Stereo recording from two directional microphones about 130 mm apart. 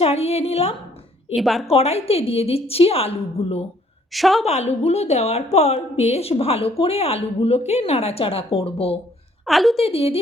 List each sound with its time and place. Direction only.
0.0 s a woman's voice: 55° left (ahead or behind)
1.4 s a woman's voice: centre (ahead or behind)
1.6 s a woman's voice: 50° left (ahead or behind)
4.1 s a woman's voice: centre (ahead or behind)
4.4 s a woman's voice: 55° left (ahead or behind)
9.5 s a woman's voice: centre (ahead or behind)
9.7 s a woman's voice: 50° left (ahead or behind)